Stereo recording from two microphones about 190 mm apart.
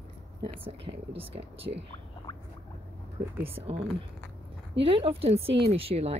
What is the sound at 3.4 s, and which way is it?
Speech, 30° right (ahead or behind).